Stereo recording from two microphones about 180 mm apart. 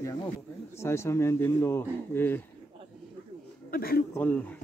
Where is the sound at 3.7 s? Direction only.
55° left (ahead or behind).